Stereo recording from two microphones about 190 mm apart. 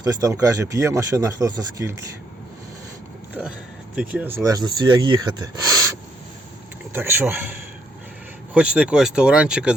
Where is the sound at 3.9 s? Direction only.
5° right (ahead or behind).